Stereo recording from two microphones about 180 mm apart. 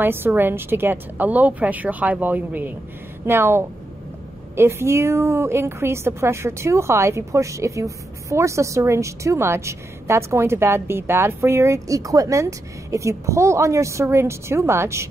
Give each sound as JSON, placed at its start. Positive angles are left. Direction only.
{"t": 0.0, "sound": "a woman's voice", "side_deg": -10}